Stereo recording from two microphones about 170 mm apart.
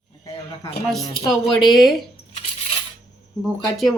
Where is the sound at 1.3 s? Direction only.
Centre (ahead or behind).